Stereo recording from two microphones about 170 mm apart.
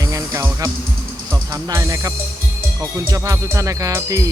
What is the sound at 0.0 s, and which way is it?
Music, 20° right (ahead or behind).